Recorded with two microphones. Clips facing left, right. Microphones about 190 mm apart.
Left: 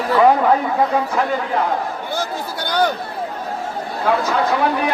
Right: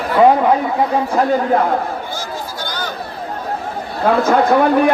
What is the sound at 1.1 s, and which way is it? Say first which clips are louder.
Speech: right 5 dB; 45° right (ahead or behind).